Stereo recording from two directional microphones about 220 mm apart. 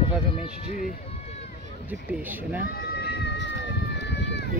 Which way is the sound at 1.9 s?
10° right (ahead or behind).